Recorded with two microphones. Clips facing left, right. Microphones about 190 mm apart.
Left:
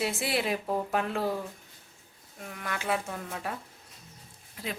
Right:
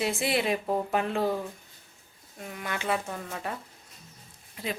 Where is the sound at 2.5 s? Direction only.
Centre (ahead or behind).